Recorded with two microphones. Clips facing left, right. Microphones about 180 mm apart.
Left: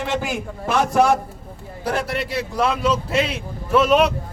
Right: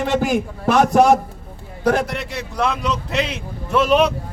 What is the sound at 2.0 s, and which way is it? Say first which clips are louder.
A man's voice: left 2 dB; 5° left (ahead or behind).